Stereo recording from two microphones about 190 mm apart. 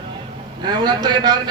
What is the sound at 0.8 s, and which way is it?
Speech, 20° right (ahead or behind).